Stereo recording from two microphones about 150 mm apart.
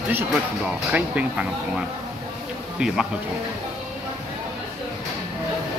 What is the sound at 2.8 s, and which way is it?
Speech, 5° right (ahead or behind).